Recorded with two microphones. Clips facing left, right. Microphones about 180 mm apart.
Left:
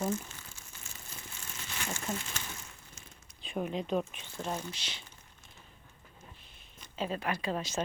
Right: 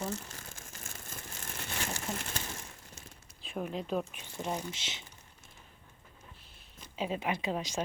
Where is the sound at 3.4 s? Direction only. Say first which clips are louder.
Left 2 dB; centre (ahead or behind).